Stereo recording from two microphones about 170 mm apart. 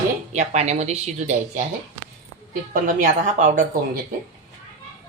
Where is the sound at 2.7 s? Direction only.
50° right (ahead or behind).